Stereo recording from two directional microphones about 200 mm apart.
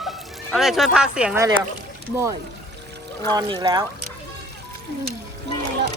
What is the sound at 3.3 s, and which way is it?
Speech, 20° right (ahead or behind).